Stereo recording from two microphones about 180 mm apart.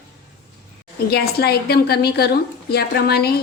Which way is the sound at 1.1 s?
60° left (ahead or behind).